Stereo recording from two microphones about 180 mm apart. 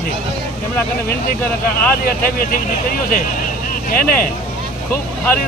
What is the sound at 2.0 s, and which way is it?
Speech, 50° left (ahead or behind).